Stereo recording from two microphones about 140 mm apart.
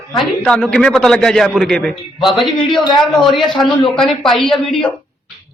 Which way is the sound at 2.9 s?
Centre (ahead or behind).